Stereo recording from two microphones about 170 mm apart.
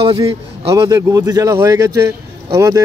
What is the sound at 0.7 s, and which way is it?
A man's voice, 20° right (ahead or behind).